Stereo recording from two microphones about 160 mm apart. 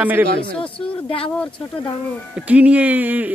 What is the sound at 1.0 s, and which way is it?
Speech, 35° left (ahead or behind).